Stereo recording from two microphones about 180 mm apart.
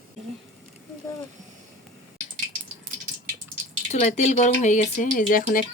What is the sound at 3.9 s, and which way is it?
Speech, 40° left (ahead or behind).